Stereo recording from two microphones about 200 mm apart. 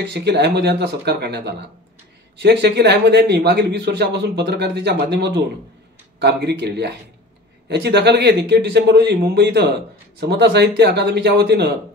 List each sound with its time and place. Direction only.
0.1 s speech: 55° right (ahead or behind)